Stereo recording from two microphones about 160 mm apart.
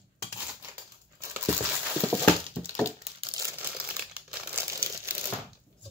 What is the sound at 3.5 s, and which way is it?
Crumpling, 10° right (ahead or behind).